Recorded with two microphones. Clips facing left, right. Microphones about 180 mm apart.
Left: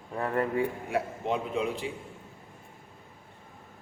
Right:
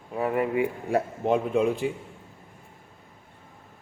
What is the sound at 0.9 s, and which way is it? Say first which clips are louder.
Speech: right 7 dB; 50° right (ahead or behind).